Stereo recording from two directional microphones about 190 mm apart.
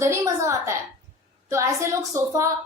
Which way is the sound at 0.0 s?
15° right (ahead or behind).